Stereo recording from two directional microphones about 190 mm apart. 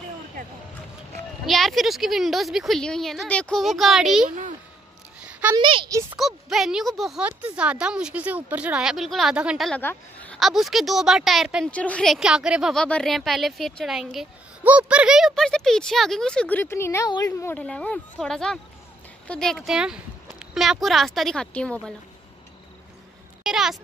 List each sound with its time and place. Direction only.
1.4 s speech: centre (ahead or behind)
5.6 s speech: 25° right (ahead or behind)
6.1 s speech: centre (ahead or behind)
9.8 s speech: 10° left (ahead or behind)
23.4 s a child's voice: centre (ahead or behind)